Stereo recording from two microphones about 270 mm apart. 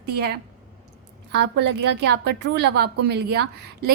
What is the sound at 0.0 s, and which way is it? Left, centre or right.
A woman's voice, right.